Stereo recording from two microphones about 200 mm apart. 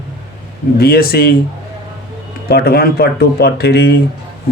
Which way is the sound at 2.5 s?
55° left (ahead or behind).